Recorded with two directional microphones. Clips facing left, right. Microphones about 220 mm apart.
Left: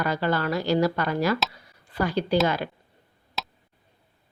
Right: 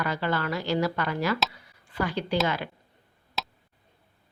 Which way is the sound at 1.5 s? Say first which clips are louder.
Left 2 dB; 40° left (ahead or behind).